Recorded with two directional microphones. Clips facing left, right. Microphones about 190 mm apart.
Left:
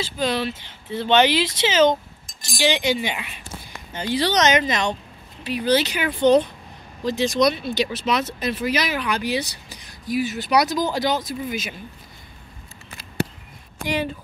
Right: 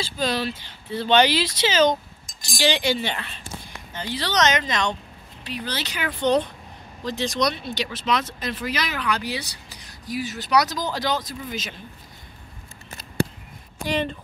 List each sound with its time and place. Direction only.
0.0 s speech: 20° left (ahead or behind)
13.8 s speech: 10° left (ahead or behind)